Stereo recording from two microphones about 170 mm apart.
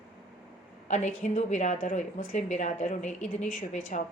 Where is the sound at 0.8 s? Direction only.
45° left (ahead or behind).